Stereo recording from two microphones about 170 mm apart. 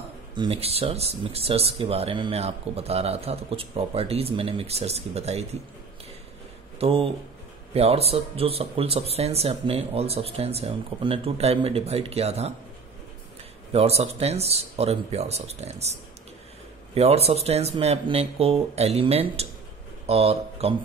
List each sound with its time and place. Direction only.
0.4 s speech: 35° right (ahead or behind)
6.8 s speech: 35° right (ahead or behind)
13.7 s speech: 35° right (ahead or behind)